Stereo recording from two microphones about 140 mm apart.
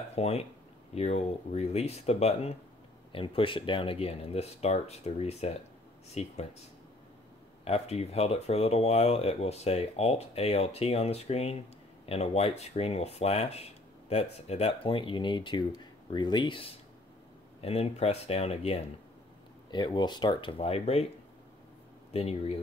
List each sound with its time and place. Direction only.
0.1 s speech: 50° left (ahead or behind)
3.1 s speech: 40° left (ahead or behind)
7.6 s speech: 45° left (ahead or behind)
19.7 s speech: 30° left (ahead or behind)
22.1 s speech: 45° left (ahead or behind)